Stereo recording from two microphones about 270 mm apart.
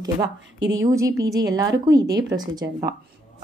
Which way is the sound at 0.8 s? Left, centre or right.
Centre.